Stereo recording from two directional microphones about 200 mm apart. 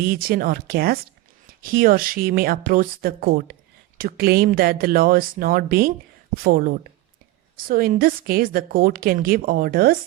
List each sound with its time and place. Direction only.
0.0 s speech: 50° right (ahead or behind)